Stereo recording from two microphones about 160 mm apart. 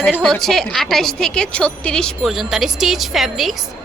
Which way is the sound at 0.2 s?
Centre (ahead or behind).